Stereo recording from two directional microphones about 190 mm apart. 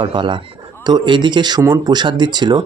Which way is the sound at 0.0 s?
25° right (ahead or behind).